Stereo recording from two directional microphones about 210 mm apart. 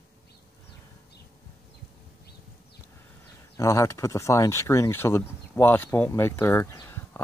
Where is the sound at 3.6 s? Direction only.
15° left (ahead or behind).